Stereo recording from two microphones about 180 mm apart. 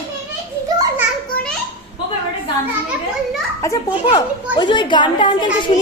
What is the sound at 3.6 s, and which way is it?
A woman's voice, 15° left (ahead or behind).